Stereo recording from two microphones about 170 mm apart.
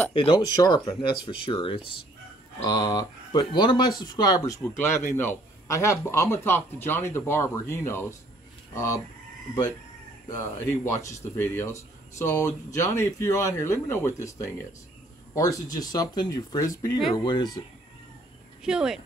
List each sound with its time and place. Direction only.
0.1 s speech: 30° left (ahead or behind)
10.2 s speech: 20° left (ahead or behind)
18.6 s speech: 5° right (ahead or behind)